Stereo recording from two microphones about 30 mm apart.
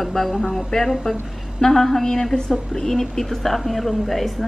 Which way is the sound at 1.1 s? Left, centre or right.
Centre.